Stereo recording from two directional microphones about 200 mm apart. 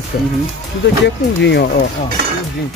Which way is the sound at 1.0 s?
60° left (ahead or behind).